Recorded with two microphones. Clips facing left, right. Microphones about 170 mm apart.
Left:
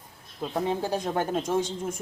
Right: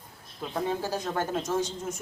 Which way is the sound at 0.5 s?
20° left (ahead or behind).